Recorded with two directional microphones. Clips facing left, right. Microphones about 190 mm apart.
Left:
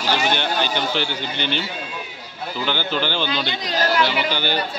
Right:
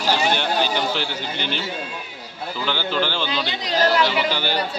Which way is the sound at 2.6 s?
Centre (ahead or behind).